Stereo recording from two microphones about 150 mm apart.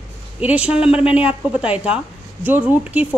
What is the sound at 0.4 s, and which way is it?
A woman's voice, 10° right (ahead or behind).